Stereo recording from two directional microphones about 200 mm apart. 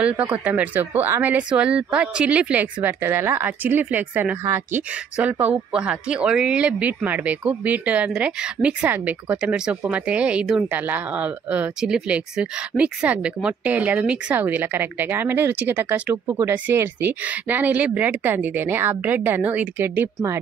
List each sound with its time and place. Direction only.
0.0 s speech: 5° right (ahead or behind)